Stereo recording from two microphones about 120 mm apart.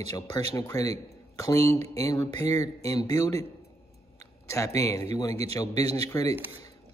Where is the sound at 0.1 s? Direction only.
30° left (ahead or behind).